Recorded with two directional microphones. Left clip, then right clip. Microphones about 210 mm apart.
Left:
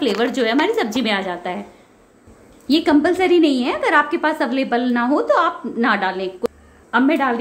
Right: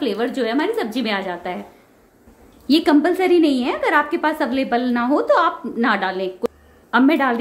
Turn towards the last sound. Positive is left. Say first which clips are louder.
# right 1 dB
turn(degrees=-15)  # may be behind; listen again after turning